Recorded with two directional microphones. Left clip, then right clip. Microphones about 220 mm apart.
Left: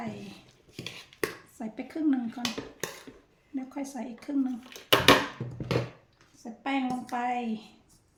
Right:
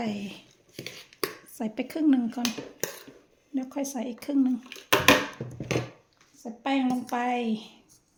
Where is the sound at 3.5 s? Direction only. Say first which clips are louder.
Right 5 dB; 40° right (ahead or behind).